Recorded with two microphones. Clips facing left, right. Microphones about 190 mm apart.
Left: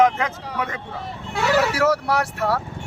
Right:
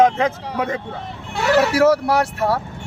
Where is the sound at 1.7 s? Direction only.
30° right (ahead or behind).